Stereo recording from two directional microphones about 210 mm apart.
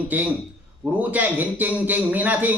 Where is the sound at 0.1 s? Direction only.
5° right (ahead or behind).